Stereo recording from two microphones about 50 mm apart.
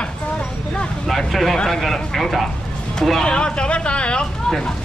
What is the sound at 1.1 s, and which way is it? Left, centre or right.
Speech, centre.